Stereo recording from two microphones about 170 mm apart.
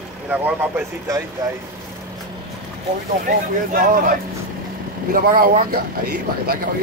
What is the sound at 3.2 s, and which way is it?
Speech, 55° right (ahead or behind).